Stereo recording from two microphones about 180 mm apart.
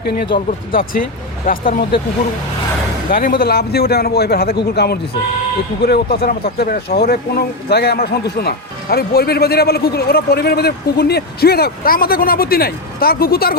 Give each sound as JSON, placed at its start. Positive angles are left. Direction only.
{"t": 0.3, "sound": "speech", "side_deg": 50}
{"t": 3.1, "sound": "speech", "side_deg": 50}